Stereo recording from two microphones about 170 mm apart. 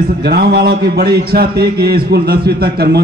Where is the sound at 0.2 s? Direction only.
75° right (ahead or behind).